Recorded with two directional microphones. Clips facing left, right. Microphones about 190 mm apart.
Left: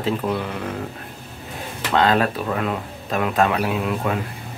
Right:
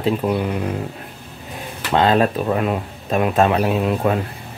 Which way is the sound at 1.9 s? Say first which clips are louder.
Right 3 dB; 25° right (ahead or behind).